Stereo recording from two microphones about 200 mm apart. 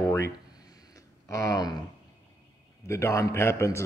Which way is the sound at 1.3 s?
15° left (ahead or behind).